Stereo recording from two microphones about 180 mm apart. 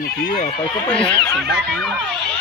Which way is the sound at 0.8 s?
5° left (ahead or behind).